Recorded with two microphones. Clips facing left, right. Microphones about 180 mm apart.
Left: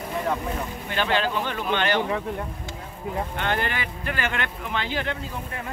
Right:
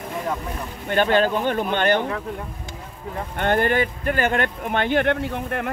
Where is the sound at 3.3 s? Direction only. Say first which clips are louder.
Right 11 dB; 50° right (ahead or behind).